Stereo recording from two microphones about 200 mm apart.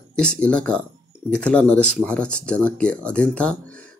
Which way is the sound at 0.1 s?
5° left (ahead or behind).